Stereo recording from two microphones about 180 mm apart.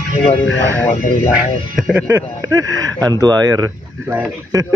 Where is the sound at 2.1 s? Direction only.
20° right (ahead or behind).